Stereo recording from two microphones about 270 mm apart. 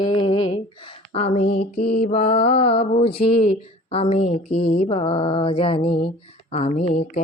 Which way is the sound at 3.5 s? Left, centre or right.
Left.